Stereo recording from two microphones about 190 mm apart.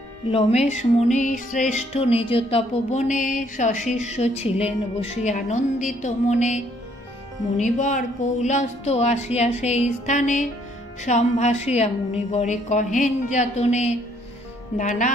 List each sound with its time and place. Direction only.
0.3 s music: 30° left (ahead or behind)